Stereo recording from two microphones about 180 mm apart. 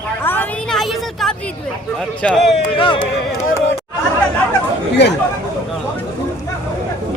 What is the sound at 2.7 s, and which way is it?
Speech, 30° left (ahead or behind).